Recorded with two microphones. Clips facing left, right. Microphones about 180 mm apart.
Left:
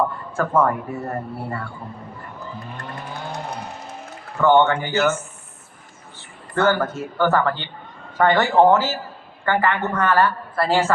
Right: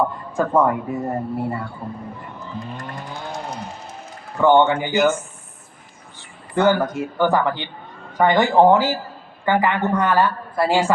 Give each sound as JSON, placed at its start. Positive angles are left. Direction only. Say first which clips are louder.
{"t": 0.3, "sound": "a woman's voice", "louder": "right 2 dB", "side_deg": -15}
{"t": 4.4, "sound": "a woman's voice", "louder": "right 1 dB", "side_deg": -15}
{"t": 6.5, "sound": "a woman's voice", "louder": "right 2 dB", "side_deg": -15}